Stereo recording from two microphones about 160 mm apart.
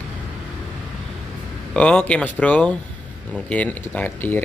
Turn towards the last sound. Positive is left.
turn(degrees=10)  # may be behind; listen again after turning